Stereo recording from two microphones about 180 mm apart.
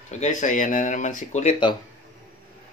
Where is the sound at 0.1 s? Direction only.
40° left (ahead or behind).